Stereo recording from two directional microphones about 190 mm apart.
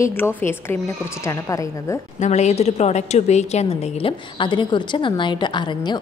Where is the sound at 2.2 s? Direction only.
35° left (ahead or behind).